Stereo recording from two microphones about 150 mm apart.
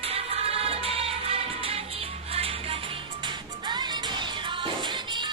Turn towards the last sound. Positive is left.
turn(degrees=-30)  # may be behind; listen again after turning